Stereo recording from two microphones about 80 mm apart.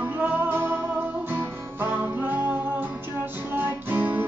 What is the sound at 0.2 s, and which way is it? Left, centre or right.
Music, right.